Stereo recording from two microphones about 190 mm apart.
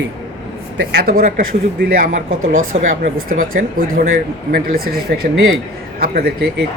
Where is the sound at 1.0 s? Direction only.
45° right (ahead or behind).